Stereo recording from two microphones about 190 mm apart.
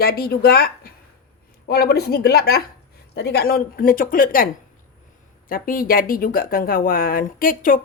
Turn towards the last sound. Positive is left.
turn(degrees=50)  # may be behind; listen again after turning